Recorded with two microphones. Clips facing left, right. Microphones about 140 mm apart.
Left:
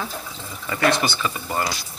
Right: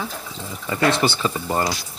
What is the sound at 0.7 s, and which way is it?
Speech, 25° right (ahead or behind).